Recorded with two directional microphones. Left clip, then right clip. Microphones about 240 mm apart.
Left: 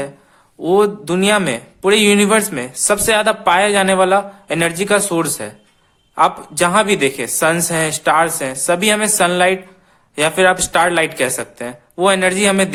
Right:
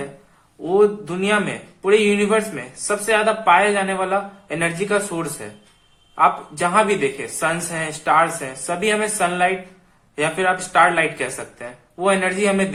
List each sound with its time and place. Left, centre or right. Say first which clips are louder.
0.6 s a man's voice: left 3 dB; left